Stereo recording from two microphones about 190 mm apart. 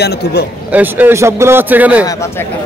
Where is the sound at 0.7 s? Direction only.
10° right (ahead or behind).